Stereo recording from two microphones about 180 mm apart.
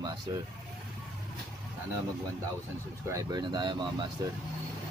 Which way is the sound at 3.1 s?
20° right (ahead or behind).